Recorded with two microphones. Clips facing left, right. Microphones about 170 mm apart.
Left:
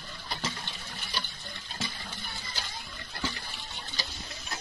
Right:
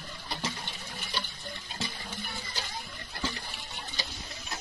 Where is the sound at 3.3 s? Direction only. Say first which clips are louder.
Right 1 dB; 5° right (ahead or behind).